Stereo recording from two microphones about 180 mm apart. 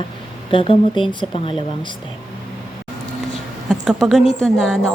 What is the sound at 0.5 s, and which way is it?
Speech, 30° left (ahead or behind).